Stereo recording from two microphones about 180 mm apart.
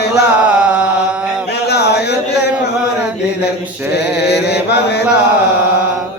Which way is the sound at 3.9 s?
70° left (ahead or behind).